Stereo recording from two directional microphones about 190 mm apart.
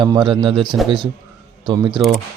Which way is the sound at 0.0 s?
25° right (ahead or behind).